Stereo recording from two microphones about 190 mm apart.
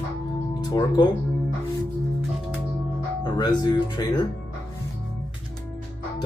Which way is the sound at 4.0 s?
20° left (ahead or behind).